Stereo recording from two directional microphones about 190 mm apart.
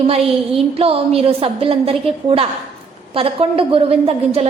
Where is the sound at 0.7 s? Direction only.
30° right (ahead or behind).